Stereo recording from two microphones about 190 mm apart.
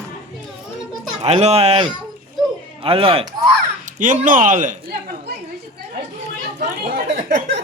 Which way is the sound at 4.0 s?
45° right (ahead or behind).